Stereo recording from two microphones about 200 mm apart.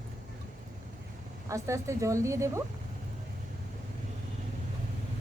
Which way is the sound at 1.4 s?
15° right (ahead or behind).